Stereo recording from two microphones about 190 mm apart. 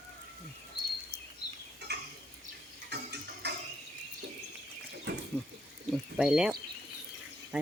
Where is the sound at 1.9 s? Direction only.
60° right (ahead or behind).